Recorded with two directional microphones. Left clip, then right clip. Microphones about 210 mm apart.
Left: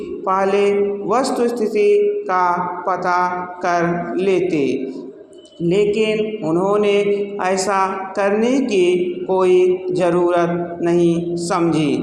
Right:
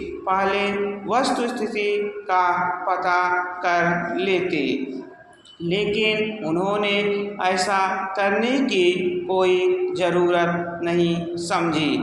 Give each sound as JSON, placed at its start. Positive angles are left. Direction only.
{"t": 0.3, "sound": "mantra", "side_deg": 35}